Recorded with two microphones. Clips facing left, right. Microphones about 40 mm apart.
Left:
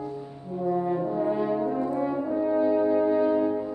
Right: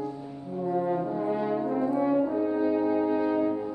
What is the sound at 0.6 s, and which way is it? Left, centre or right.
Brass instrument, centre.